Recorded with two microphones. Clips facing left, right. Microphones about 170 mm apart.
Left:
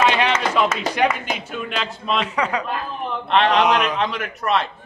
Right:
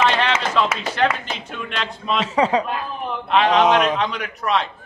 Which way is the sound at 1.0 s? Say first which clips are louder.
Even; 10° left (ahead or behind).